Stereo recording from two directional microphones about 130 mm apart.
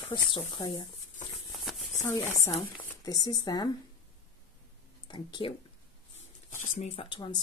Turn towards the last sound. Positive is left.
turn(degrees=35)  # may be behind; listen again after turning